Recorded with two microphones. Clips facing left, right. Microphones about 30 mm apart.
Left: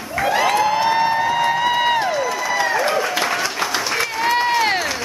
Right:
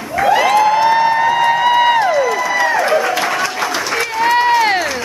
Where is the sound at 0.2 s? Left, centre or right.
Centre.